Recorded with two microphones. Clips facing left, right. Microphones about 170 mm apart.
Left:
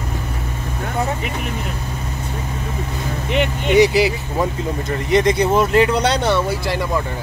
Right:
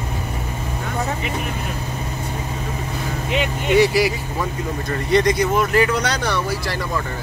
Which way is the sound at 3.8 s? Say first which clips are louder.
Left 3 dB; 20° left (ahead or behind).